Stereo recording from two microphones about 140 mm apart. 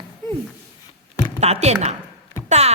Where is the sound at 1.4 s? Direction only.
50° right (ahead or behind).